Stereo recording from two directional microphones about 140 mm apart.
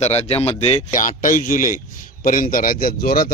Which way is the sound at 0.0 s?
50° left (ahead or behind).